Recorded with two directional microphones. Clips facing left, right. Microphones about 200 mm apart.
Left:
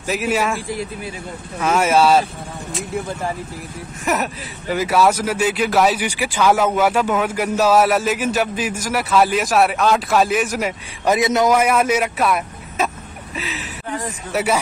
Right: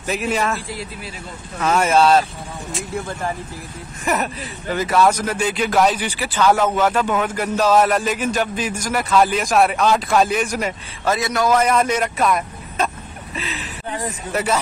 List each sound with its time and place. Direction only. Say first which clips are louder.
0.0 s speech: left 1 dB; 5° left (ahead or behind)
4.0 s speech: even; 5° left (ahead or behind)
11.1 s a man's voice: left 3 dB; 20° left (ahead or behind)
11.5 s speech: left 1 dB; 10° left (ahead or behind)
14.3 s speech: left 2 dB; 10° left (ahead or behind)